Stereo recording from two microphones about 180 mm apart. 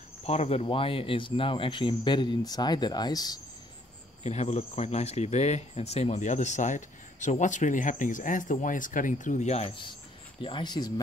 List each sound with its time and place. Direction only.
0.2 s speech: 35° left (ahead or behind)
4.2 s speech: 40° left (ahead or behind)